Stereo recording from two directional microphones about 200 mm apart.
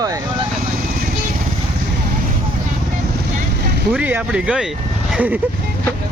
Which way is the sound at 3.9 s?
10° right (ahead or behind).